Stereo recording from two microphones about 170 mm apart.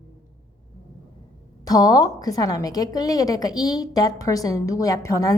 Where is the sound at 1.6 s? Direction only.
20° left (ahead or behind).